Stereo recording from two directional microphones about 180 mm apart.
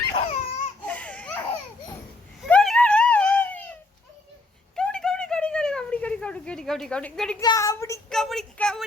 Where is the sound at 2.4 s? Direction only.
Centre (ahead or behind).